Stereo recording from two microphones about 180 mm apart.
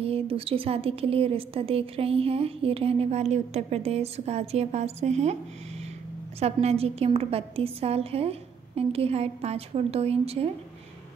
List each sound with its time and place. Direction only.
0.0 s a woman's voice: 30° right (ahead or behind)
6.4 s a woman's voice: 35° right (ahead or behind)